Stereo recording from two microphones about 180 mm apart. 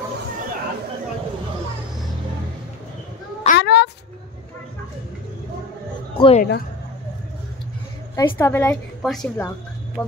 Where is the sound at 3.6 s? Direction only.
70° left (ahead or behind).